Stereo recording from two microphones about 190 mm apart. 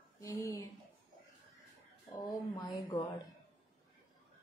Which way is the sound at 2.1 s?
20° left (ahead or behind).